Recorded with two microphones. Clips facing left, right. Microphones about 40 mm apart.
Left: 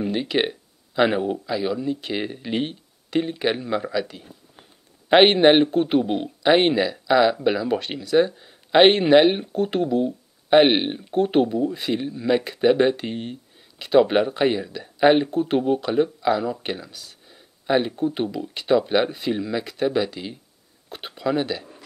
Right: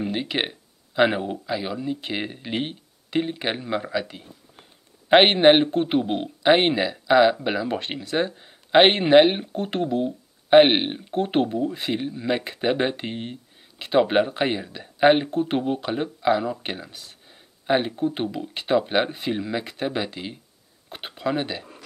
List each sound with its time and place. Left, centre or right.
0.0 s speech: centre
5.1 s speech: centre